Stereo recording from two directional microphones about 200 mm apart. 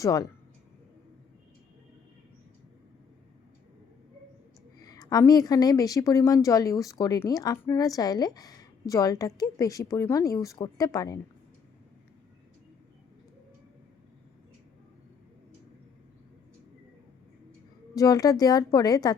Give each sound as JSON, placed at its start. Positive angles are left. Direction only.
{"t": 0.0, "sound": "a woman's voice", "side_deg": 15}
{"t": 4.8, "sound": "a woman's voice", "side_deg": 20}
{"t": 17.9, "sound": "a woman's voice", "side_deg": 15}